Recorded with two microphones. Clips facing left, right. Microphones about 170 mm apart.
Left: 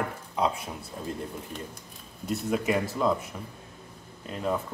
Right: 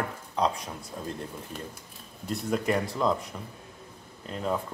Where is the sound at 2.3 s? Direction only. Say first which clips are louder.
Left 1 dB; 5° left (ahead or behind).